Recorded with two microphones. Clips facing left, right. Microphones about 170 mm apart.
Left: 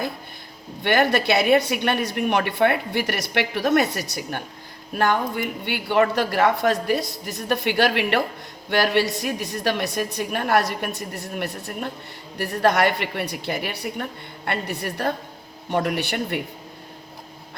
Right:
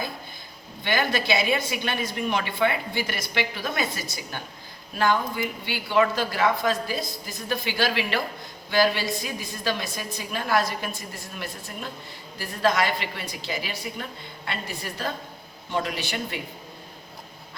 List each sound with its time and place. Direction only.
0.9 s a woman's voice: 65° left (ahead or behind)